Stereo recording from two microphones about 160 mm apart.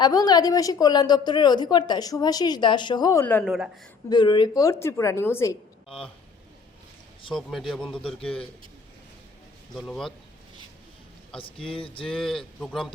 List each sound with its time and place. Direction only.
0.0 s a woman's voice: 25° left (ahead or behind)
3.4 s speech: 5° right (ahead or behind)
4.1 s a woman's voice: 30° left (ahead or behind)
7.3 s speech: centre (ahead or behind)
8.2 s a man's voice: 35° left (ahead or behind)
9.7 s speech: centre (ahead or behind)
11.3 s a man's voice: 35° left (ahead or behind)
12.0 s speech: 5° left (ahead or behind)